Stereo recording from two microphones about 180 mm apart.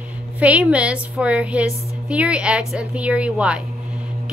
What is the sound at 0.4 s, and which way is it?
A woman's voice, 5° right (ahead or behind).